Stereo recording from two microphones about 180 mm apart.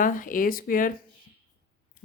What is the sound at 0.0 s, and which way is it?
Speech, 50° left (ahead or behind).